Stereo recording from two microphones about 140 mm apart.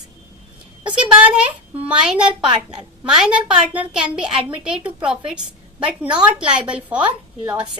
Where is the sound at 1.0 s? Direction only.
10° right (ahead or behind).